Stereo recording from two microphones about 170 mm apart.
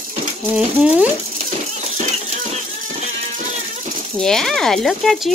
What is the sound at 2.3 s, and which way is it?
Music, 50° right (ahead or behind).